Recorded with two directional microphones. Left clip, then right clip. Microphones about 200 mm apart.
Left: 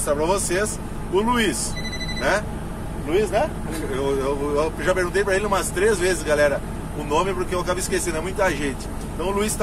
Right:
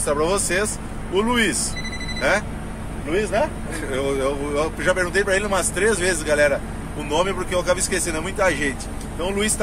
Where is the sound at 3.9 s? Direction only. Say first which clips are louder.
Right 1 dB; 25° right (ahead or behind).